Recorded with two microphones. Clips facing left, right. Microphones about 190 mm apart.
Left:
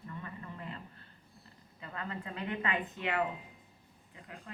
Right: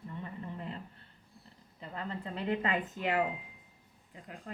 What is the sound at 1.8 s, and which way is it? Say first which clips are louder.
A woman's voice: right 2 dB; 30° right (ahead or behind).